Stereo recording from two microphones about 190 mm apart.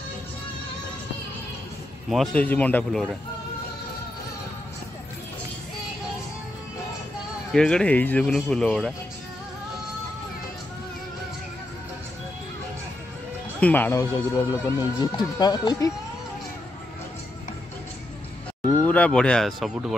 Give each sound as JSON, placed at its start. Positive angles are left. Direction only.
{"t": 2.0, "sound": "speech", "side_deg": 5}
{"t": 7.5, "sound": "speech", "side_deg": 5}
{"t": 13.6, "sound": "speech", "side_deg": 10}
{"t": 18.9, "sound": "speech", "side_deg": 5}